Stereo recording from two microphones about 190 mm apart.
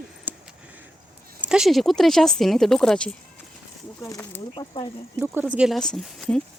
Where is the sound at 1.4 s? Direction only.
5° right (ahead or behind).